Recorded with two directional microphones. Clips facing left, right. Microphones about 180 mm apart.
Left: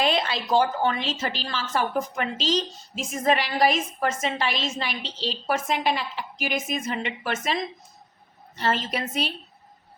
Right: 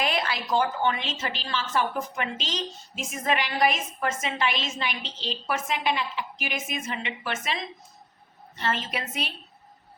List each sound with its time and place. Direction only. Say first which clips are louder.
0.0 s a woman's voice: left 3 dB; 25° left (ahead or behind)